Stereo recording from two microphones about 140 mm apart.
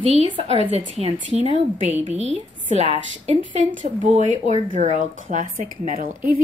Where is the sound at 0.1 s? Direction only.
45° right (ahead or behind).